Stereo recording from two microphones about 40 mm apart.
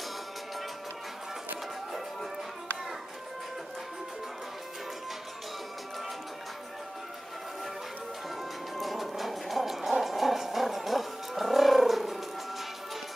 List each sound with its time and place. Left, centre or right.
8.4 s music: centre